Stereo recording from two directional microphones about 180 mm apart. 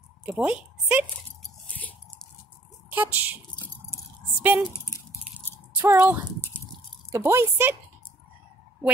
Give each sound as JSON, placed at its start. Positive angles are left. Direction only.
{"t": 0.2, "sound": "a woman's voice", "side_deg": -5}
{"t": 1.4, "sound": "a sound", "side_deg": 10}
{"t": 2.9, "sound": "speech", "side_deg": -10}
{"t": 4.4, "sound": "speech", "side_deg": -5}
{"t": 5.7, "sound": "speech", "side_deg": -10}